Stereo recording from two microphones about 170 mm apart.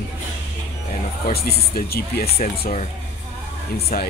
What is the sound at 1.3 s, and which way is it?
Speech, 65° left (ahead or behind).